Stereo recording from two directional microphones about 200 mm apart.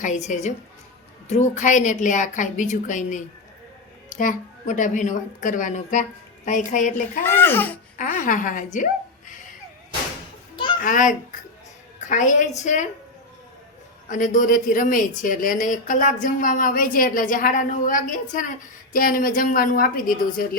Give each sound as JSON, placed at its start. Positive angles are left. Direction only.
{"t": 0.0, "sound": "a woman's voice", "side_deg": 40}
{"t": 7.3, "sound": "speech", "side_deg": 10}
{"t": 7.9, "sound": "a woman's voice", "side_deg": 40}
{"t": 10.8, "sound": "a woman's voice", "side_deg": 40}
{"t": 14.1, "sound": "a woman's voice", "side_deg": 40}